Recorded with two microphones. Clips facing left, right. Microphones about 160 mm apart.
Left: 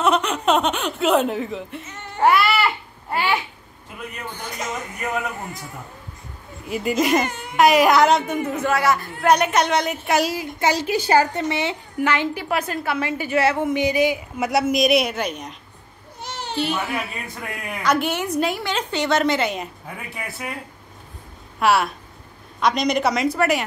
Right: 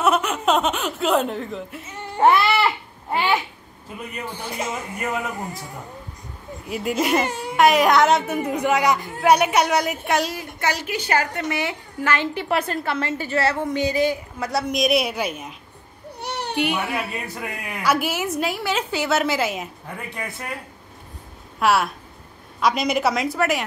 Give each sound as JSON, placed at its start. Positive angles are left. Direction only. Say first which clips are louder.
{"t": 0.0, "sound": "chuckle", "louder": "even", "side_deg": -5}
{"t": 2.1, "sound": "babbling", "louder": "right 1 dB", "side_deg": -20}
{"t": 4.3, "sound": "speech", "louder": "right 1 dB", "side_deg": -30}
{"t": 6.6, "sound": "a woman's voice", "louder": "left 2 dB", "side_deg": 0}
{"t": 7.2, "sound": "speech", "louder": "right 3 dB", "side_deg": -30}
{"t": 7.5, "sound": "a man's voice", "louder": "left 1 dB", "side_deg": 0}
{"t": 10.6, "sound": "a woman's voice", "louder": "left 4 dB", "side_deg": 25}
{"t": 12.4, "sound": "a woman's voice", "louder": "right 1 dB", "side_deg": 0}
{"t": 14.6, "sound": "a woman's voice", "louder": "left 2 dB", "side_deg": 0}
{"t": 16.2, "sound": "cat", "louder": "right 3 dB", "side_deg": -65}
{"t": 16.5, "sound": "a man's voice", "louder": "even", "side_deg": -15}
{"t": 16.9, "sound": "a woman's voice", "louder": "right 1 dB", "side_deg": -5}
{"t": 21.5, "sound": "a woman's voice", "louder": "left 1 dB", "side_deg": 0}